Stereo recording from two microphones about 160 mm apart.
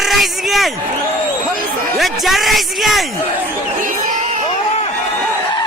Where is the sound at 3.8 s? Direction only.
55° right (ahead or behind).